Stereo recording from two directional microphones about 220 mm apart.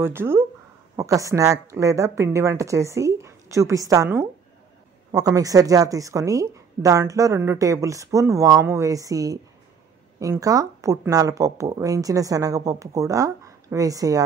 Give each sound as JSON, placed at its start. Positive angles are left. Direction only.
{"t": 0.0, "sound": "speech", "side_deg": -10}